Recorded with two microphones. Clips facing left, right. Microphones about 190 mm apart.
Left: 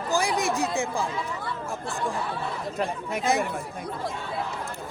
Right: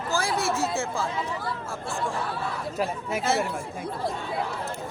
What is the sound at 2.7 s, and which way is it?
Speech, 5° right (ahead or behind).